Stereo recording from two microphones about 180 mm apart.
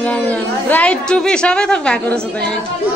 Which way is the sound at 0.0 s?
10° left (ahead or behind).